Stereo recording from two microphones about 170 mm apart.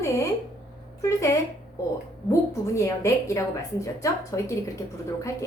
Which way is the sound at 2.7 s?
20° left (ahead or behind).